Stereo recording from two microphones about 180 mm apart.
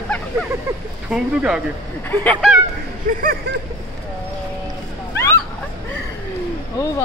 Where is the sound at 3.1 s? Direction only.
50° right (ahead or behind).